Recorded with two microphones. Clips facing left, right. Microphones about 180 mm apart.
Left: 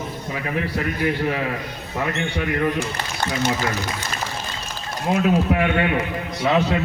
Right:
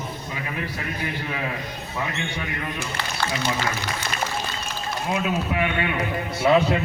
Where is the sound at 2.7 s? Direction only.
20° left (ahead or behind).